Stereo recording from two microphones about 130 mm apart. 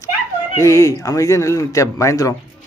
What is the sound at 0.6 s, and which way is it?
Speech, 25° left (ahead or behind).